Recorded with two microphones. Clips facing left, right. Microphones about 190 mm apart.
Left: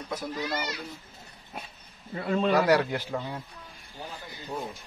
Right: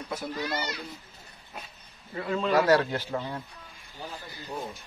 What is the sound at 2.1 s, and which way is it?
Speech, 30° left (ahead or behind).